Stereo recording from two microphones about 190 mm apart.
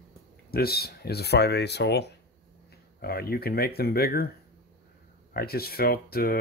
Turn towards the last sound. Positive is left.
turn(degrees=55)  # may be behind; listen again after turning